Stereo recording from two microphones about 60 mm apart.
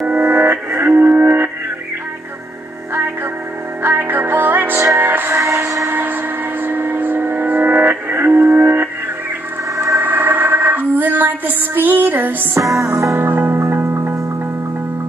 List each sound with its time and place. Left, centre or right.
0.2 s music: right
3.8 s music: right
5.3 s music: right
5.9 s music: right
9.9 s a sound: right
12.5 s music: right
13.2 s music: right